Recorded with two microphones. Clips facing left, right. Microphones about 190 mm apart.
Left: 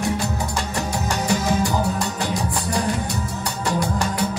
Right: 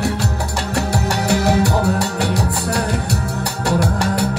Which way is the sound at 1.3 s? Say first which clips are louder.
Right 5 dB; 65° right (ahead or behind).